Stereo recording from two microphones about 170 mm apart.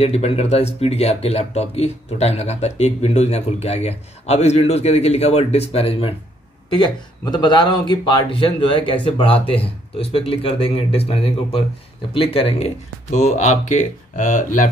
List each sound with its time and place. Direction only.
0.0 s speech: 35° left (ahead or behind)